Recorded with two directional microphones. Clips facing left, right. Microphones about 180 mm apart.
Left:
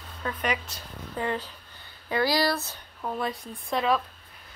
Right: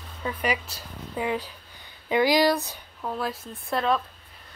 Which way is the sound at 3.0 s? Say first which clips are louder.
Even; centre (ahead or behind).